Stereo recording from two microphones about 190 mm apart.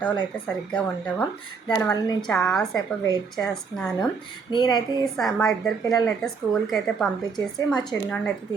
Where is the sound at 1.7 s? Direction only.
20° left (ahead or behind).